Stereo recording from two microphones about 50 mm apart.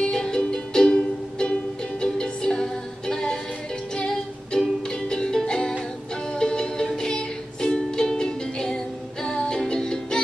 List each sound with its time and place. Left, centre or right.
0.0 s music: centre